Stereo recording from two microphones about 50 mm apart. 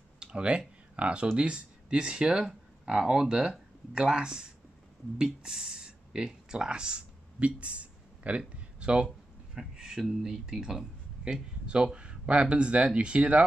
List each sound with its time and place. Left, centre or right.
0.2 s speech: centre